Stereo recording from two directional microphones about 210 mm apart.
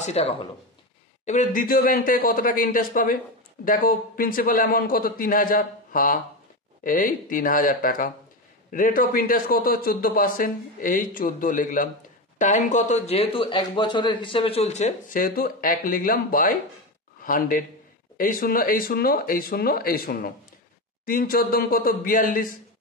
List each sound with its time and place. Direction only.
0.0 s a man's voice: 30° left (ahead or behind)